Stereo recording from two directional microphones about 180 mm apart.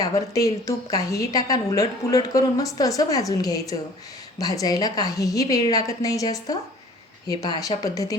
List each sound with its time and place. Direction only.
0.0 s a woman's voice: 20° left (ahead or behind)